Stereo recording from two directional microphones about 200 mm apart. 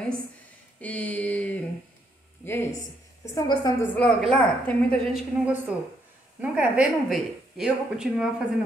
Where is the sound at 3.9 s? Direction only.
5° left (ahead or behind).